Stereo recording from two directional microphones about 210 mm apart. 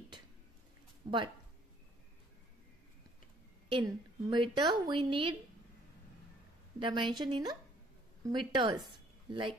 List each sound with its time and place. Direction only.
1.0 s a woman's voice: 20° right (ahead or behind)
3.6 s a woman's voice: 25° right (ahead or behind)
6.8 s a woman's voice: 25° right (ahead or behind)